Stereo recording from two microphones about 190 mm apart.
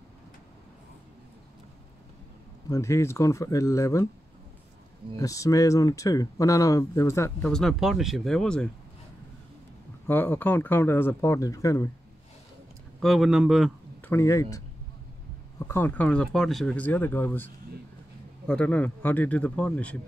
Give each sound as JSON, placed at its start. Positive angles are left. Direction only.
{"t": 2.7, "sound": "speech", "side_deg": 15}
{"t": 5.1, "sound": "speech", "side_deg": 15}
{"t": 7.4, "sound": "speech", "side_deg": 0}
{"t": 10.0, "sound": "speech", "side_deg": 10}
{"t": 13.0, "sound": "speech", "side_deg": 0}
{"t": 14.0, "sound": "speech", "side_deg": 15}
{"t": 15.6, "sound": "speech", "side_deg": 10}
{"t": 18.5, "sound": "speech", "side_deg": 5}